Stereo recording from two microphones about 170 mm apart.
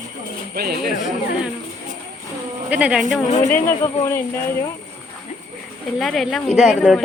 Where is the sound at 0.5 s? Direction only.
65° right (ahead or behind).